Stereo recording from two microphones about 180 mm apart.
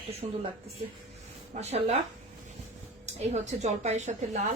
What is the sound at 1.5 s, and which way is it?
Speech, 35° right (ahead or behind).